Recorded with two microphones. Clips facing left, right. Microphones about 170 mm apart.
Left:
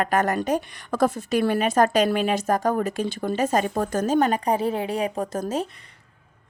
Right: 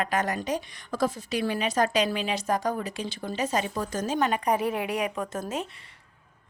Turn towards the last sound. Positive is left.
turn(degrees=35)  # may be behind; listen again after turning